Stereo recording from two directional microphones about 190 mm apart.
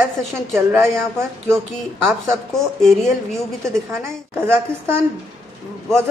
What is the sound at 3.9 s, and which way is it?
Speech, 10° right (ahead or behind).